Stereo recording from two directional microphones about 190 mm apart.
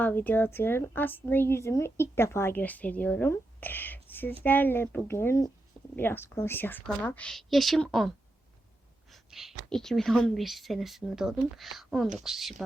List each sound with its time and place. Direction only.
0.0 s a woman's voice: 10° left (ahead or behind)